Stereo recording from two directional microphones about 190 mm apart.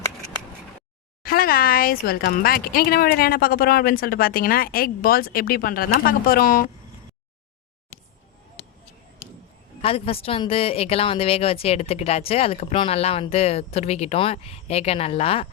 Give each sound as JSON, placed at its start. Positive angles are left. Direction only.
{"t": 1.2, "sound": "speech", "side_deg": 50}
{"t": 9.8, "sound": "a woman's voice", "side_deg": 30}